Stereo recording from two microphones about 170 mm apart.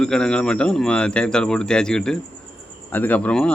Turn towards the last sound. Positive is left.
turn(degrees=5)  # may be behind; listen again after turning